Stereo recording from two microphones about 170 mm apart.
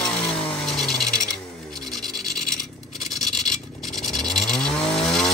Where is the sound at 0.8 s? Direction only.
5° left (ahead or behind).